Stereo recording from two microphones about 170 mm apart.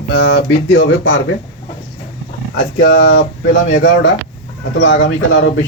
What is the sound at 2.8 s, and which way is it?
Speech, 90° left.